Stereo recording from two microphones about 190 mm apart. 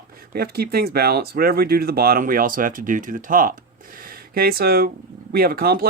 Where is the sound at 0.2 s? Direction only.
55° right (ahead or behind).